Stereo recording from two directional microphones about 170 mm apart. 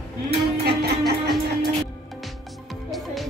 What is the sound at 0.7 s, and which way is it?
Music, 75° right (ahead or behind).